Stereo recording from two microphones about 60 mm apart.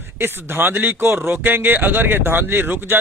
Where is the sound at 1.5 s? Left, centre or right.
Right.